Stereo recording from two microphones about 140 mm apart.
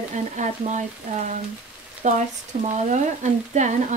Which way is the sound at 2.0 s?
60° right (ahead or behind).